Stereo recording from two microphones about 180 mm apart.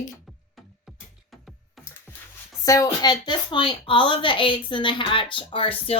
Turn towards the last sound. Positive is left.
turn(degrees=30)  # may be behind; listen again after turning